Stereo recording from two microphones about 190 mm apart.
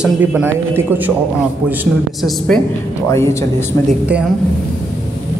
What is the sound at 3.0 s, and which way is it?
Speech, 15° left (ahead or behind).